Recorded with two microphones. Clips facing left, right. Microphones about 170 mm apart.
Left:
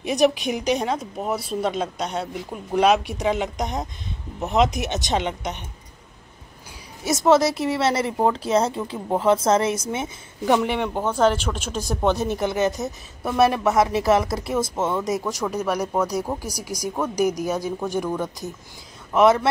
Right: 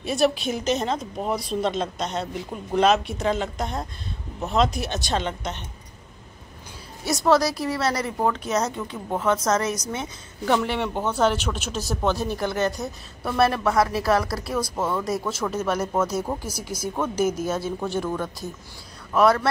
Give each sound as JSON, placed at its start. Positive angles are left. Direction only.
{"t": 0.0, "sound": "a woman's voice", "side_deg": 15}
{"t": 7.1, "sound": "speech", "side_deg": 20}
{"t": 11.1, "sound": "speech", "side_deg": -10}
{"t": 11.9, "sound": "a woman's voice", "side_deg": 20}